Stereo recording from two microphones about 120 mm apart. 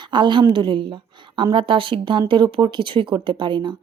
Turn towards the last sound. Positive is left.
turn(degrees=-40)  # may be behind; listen again after turning